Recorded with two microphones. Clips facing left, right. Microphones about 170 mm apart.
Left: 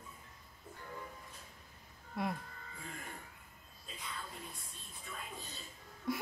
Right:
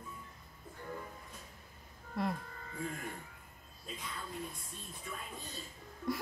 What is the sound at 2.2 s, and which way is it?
Speech, centre (ahead or behind).